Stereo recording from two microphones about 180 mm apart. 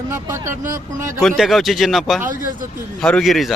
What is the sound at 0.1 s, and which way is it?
Speech, 15° right (ahead or behind).